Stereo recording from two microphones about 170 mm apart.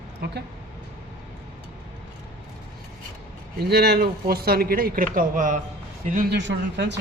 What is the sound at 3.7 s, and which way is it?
Speech, 65° right (ahead or behind).